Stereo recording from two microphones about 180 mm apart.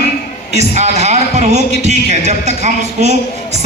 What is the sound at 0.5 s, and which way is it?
A man's voice, 40° right (ahead or behind).